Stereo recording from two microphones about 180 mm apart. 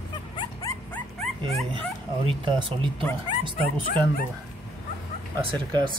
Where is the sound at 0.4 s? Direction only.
20° left (ahead or behind).